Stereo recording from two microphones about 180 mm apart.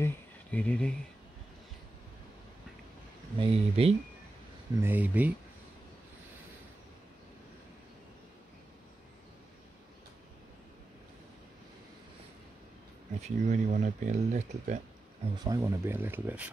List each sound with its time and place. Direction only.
0.0 s speech: 10° left (ahead or behind)
3.3 s speech: 35° right (ahead or behind)
4.8 s speech: 10° right (ahead or behind)
13.2 s speech: 40° right (ahead or behind)
15.3 s speech: 20° right (ahead or behind)